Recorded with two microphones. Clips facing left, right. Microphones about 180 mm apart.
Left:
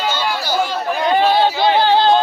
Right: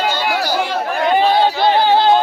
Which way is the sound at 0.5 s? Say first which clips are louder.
Even; 60° right (ahead or behind).